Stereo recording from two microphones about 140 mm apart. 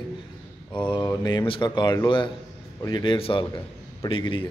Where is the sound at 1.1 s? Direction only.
25° left (ahead or behind).